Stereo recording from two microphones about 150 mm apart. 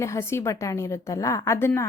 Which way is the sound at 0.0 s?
20° left (ahead or behind).